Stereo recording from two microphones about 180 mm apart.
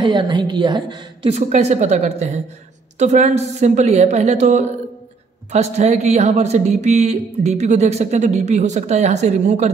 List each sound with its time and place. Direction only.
0.0 s a woman's voice: 25° right (ahead or behind)
1.3 s speech: 40° right (ahead or behind)